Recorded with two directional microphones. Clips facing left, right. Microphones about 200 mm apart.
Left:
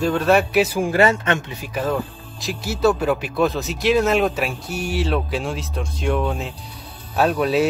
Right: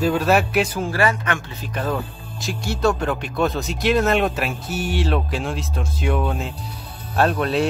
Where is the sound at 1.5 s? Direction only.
10° left (ahead or behind).